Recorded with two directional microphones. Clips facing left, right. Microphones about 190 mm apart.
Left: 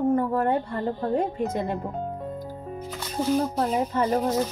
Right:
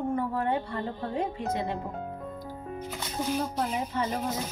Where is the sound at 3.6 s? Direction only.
45° left (ahead or behind).